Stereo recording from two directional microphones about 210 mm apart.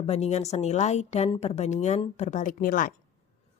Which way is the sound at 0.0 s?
30° left (ahead or behind).